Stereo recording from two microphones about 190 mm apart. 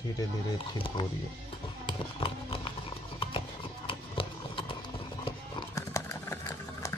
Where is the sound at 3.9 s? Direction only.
25° left (ahead or behind).